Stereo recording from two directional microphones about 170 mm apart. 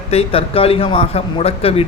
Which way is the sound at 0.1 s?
35° left (ahead or behind).